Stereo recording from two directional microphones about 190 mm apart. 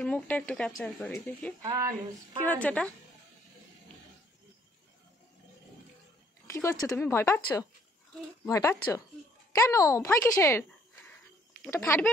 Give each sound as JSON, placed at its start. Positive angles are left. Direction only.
{"t": 0.0, "sound": "speech", "side_deg": 5}
{"t": 1.6, "sound": "speech", "side_deg": -15}
{"t": 2.4, "sound": "speech", "side_deg": 10}
{"t": 6.4, "sound": "speech", "side_deg": 15}
{"t": 11.7, "sound": "speech", "side_deg": 15}